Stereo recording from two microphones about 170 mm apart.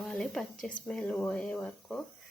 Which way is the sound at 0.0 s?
5° left (ahead or behind).